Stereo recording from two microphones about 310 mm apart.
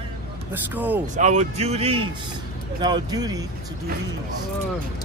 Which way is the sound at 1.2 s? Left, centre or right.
Right.